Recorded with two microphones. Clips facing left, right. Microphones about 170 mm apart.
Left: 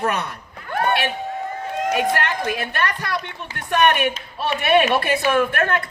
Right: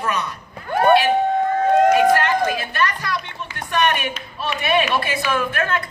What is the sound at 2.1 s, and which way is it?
A woman's voice, 65° left (ahead or behind).